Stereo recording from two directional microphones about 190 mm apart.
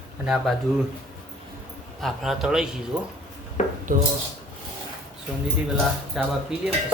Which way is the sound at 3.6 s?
40° left (ahead or behind).